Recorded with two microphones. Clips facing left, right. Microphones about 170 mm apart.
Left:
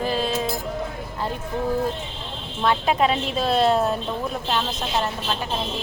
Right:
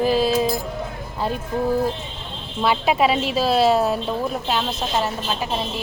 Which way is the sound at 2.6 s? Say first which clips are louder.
Right 2 dB; 10° right (ahead or behind).